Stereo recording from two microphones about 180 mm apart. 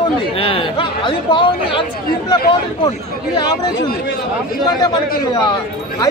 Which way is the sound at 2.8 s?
20° left (ahead or behind).